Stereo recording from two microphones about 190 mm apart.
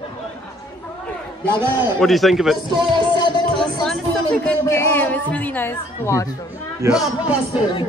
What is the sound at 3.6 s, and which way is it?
Speech, centre (ahead or behind).